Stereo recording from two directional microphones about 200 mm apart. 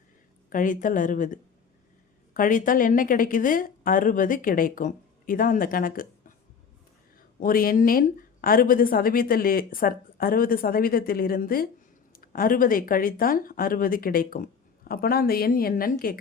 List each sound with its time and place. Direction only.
0.5 s speech: 40° left (ahead or behind)
7.3 s speech: 45° left (ahead or behind)